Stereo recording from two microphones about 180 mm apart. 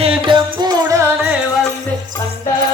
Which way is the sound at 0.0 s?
25° right (ahead or behind).